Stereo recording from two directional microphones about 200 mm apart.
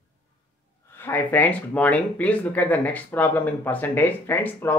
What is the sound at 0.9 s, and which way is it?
Speech, 10° left (ahead or behind).